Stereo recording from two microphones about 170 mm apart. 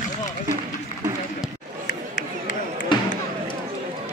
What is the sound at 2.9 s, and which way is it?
Basketball bounce, 30° left (ahead or behind).